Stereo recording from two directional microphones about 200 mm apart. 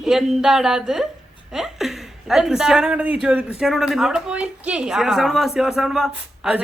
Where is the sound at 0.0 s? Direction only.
Centre (ahead or behind).